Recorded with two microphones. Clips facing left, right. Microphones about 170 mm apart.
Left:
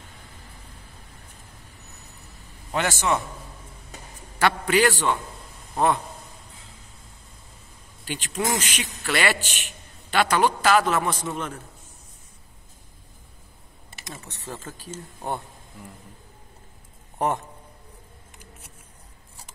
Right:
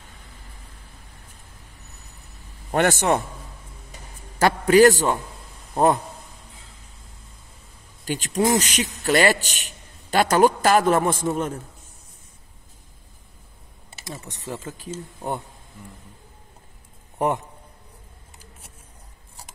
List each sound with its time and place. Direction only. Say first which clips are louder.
2.7 s a man's voice: right 5 dB; 60° right (ahead or behind)
4.4 s a man's voice: right 6 dB; 40° right (ahead or behind)
8.0 s a man's voice: right 6 dB; 40° right (ahead or behind)
14.2 s speech: right 4 dB; 15° right (ahead or behind)